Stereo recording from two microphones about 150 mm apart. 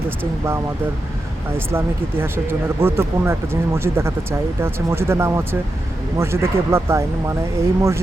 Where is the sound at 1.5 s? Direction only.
15° right (ahead or behind).